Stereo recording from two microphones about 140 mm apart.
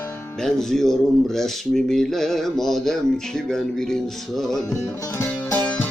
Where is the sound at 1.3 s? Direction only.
Centre (ahead or behind).